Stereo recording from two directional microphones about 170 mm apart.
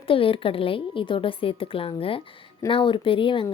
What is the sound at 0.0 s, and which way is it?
A woman's voice, 30° left (ahead or behind).